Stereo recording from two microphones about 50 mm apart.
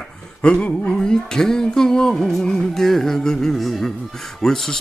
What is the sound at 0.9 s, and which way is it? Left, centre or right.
Music, centre.